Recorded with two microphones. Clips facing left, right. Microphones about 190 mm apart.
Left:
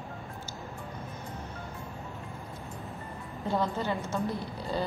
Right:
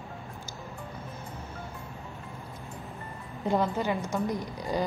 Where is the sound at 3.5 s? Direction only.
15° right (ahead or behind).